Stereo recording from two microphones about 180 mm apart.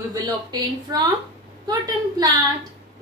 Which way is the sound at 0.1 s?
25° right (ahead or behind).